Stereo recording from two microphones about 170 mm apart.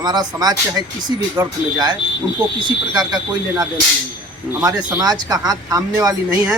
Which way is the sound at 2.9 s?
25° right (ahead or behind).